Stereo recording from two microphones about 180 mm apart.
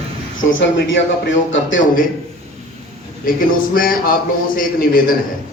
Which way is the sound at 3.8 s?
50° left (ahead or behind).